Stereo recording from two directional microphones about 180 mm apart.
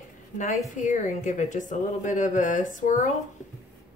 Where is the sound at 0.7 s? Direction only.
45° left (ahead or behind).